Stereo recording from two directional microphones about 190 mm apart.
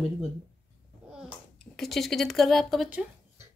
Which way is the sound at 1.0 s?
5° right (ahead or behind).